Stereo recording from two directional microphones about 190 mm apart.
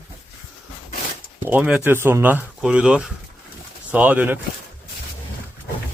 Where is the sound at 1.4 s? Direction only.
10° right (ahead or behind).